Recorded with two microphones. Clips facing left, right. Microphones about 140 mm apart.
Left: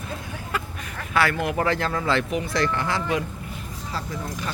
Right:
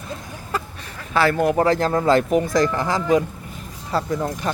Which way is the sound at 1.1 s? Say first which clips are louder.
Right 5 dB; 35° right (ahead or behind).